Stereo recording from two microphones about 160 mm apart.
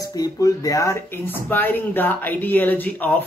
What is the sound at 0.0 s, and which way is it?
Speech, 25° left (ahead or behind).